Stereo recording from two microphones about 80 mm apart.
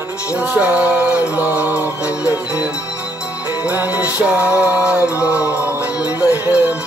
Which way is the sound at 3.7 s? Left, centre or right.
Right.